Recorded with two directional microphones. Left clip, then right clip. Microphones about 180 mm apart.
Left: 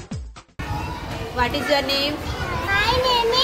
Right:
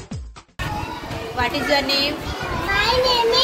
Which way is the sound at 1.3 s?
65° left (ahead or behind).